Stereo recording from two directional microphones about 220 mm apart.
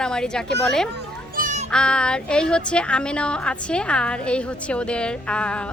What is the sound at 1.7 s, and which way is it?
A woman's voice, 5° left (ahead or behind).